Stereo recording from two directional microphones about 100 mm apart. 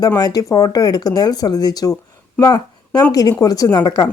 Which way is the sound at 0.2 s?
40° left (ahead or behind).